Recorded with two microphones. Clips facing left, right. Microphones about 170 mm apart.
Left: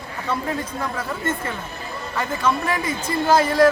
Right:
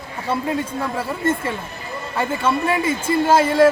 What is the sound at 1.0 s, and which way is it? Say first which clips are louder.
Speech: right 7 dB; 30° right (ahead or behind).